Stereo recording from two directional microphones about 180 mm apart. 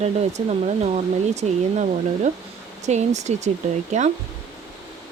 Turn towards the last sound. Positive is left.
turn(degrees=-40)  # may be behind; listen again after turning